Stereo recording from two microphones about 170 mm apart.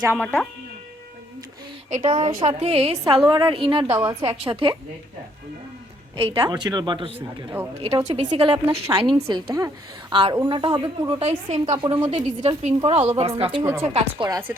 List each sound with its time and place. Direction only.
0.2 s speech: 5° left (ahead or behind)
2.0 s a woman's voice: 30° right (ahead or behind)
6.1 s a woman's voice: 30° right (ahead or behind)
13.6 s speech: 15° right (ahead or behind)
13.8 s a woman's voice: 35° right (ahead or behind)
14.3 s a woman's voice: 20° right (ahead or behind)